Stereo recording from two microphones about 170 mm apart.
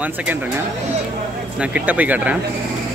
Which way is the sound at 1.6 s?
10° right (ahead or behind).